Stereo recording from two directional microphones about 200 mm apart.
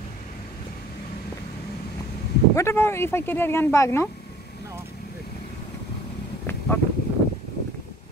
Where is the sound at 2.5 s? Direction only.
10° left (ahead or behind).